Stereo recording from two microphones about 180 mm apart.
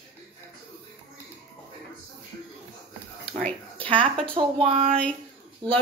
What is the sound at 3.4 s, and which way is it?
Speech, 10° left (ahead or behind).